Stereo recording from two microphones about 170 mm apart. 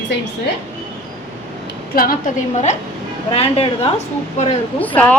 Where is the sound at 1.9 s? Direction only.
60° left (ahead or behind).